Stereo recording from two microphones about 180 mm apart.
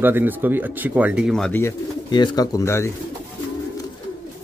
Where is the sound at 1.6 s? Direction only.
25° left (ahead or behind).